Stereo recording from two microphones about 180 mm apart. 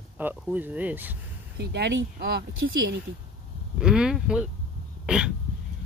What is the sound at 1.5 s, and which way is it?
Speech, 70° right (ahead or behind).